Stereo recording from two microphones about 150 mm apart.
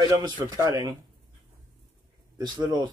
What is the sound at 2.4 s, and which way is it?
Speech, 30° right (ahead or behind).